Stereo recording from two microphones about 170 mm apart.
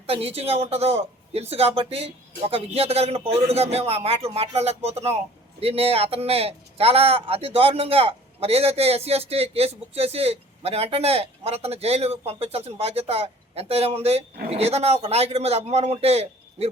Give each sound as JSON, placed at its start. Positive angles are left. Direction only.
{"t": 0.1, "sound": "speech", "side_deg": -35}